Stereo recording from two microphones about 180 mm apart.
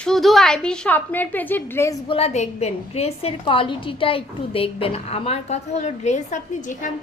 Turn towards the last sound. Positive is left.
turn(degrees=45)  # may be behind; listen again after turning